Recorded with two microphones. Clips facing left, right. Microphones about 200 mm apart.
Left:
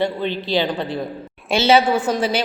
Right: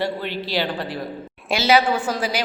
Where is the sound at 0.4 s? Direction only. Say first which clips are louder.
Left 4 dB; 20° left (ahead or behind).